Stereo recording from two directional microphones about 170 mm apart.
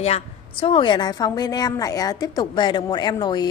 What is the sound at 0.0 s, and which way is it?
A woman's voice, 35° left (ahead or behind).